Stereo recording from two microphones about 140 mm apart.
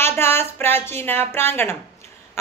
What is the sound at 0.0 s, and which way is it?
Speech, 15° left (ahead or behind).